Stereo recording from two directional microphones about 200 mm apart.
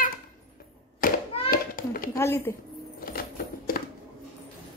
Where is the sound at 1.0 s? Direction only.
45° left (ahead or behind).